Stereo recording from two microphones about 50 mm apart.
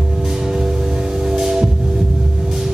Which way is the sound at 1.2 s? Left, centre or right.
Centre.